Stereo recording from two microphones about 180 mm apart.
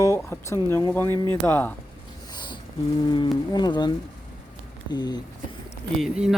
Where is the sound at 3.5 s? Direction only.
25° left (ahead or behind).